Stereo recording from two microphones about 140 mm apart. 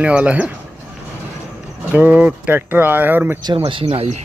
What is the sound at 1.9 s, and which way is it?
Speech, 10° right (ahead or behind).